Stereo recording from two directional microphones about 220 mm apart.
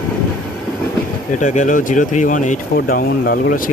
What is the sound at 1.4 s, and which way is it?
Speech, 35° left (ahead or behind).